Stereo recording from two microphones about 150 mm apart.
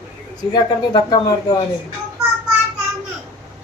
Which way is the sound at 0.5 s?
30° left (ahead or behind).